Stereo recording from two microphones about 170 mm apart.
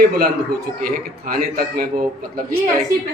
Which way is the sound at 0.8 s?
60° right (ahead or behind).